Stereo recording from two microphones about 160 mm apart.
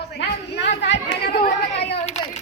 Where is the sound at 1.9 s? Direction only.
45° left (ahead or behind).